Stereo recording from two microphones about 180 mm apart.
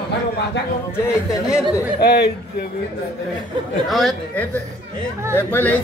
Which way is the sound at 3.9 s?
Centre (ahead or behind).